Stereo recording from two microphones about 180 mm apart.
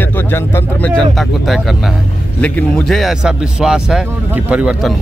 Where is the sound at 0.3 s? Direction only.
10° left (ahead or behind).